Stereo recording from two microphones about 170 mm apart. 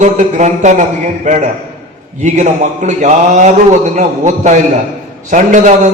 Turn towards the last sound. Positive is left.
turn(degrees=-45)  # may be behind; listen again after turning